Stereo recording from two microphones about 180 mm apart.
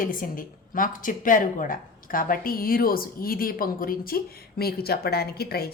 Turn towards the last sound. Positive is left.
turn(degrees=60)  # may be behind; listen again after turning